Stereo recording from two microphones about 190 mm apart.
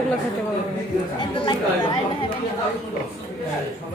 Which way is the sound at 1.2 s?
25° left (ahead or behind).